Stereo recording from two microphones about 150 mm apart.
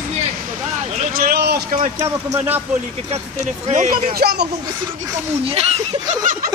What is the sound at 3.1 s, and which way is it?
Speech, 50° right (ahead or behind).